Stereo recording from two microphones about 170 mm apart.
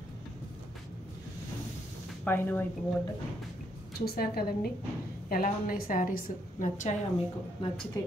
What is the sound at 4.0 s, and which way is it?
A woman's voice, 65° left (ahead or behind).